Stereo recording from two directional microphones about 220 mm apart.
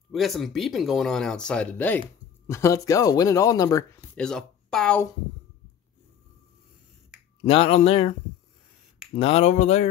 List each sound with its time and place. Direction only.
0.1 s speech: centre (ahead or behind)
4.2 s speech: 5° left (ahead or behind)
7.4 s speech: 25° left (ahead or behind)
9.1 s speech: 25° left (ahead or behind)